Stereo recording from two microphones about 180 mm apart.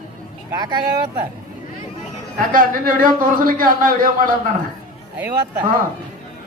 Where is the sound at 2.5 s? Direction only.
50° right (ahead or behind).